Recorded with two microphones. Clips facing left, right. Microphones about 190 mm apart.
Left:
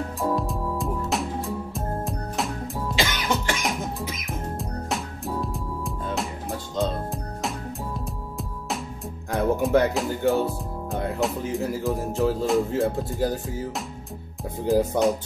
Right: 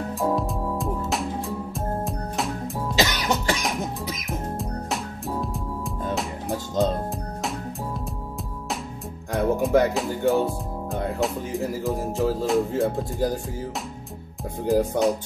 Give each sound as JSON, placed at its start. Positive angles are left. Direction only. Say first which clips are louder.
{"t": 0.2, "sound": "music", "louder": "right 1 dB", "side_deg": 0}
{"t": 3.0, "sound": "music", "louder": "right 3 dB", "side_deg": -35}
{"t": 4.3, "sound": "music", "louder": "right 4 dB", "side_deg": 0}
{"t": 9.3, "sound": "speech", "louder": "even", "side_deg": 0}
{"t": 14.7, "sound": "speech", "louder": "even", "side_deg": 0}